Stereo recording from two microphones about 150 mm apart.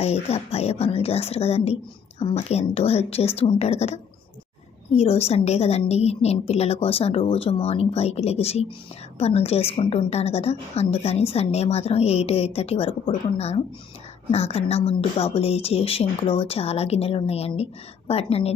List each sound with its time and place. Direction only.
0.0 s a woman's voice: 45° left (ahead or behind)